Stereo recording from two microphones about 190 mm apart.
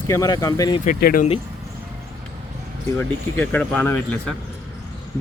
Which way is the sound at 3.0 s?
5° left (ahead or behind).